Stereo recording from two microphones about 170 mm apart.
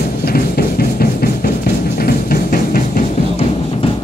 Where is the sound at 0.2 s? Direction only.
65° left (ahead or behind).